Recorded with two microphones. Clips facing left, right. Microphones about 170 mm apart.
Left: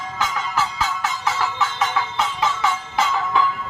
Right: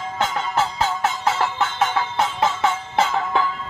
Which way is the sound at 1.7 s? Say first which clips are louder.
Right 4 dB; 30° right (ahead or behind).